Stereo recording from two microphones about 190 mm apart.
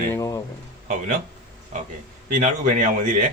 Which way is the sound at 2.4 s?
40° right (ahead or behind).